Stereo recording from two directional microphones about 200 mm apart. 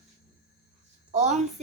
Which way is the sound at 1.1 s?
35° right (ahead or behind).